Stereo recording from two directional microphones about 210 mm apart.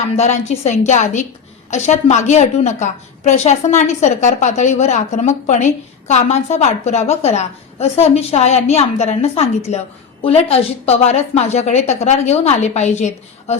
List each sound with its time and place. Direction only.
0.2 s a woman's voice: 35° left (ahead or behind)